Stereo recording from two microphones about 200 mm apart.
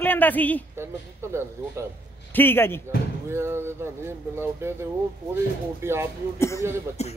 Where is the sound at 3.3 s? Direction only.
10° right (ahead or behind).